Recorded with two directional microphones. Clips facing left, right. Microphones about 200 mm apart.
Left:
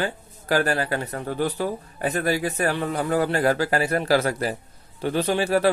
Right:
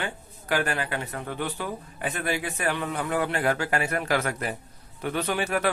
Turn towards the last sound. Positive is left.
turn(degrees=30)  # may be behind; listen again after turning